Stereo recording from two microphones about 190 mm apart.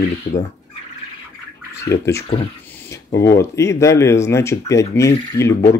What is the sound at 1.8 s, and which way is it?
Speech, 15° left (ahead or behind).